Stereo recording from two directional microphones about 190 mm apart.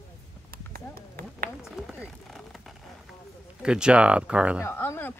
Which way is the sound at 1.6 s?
Centre (ahead or behind).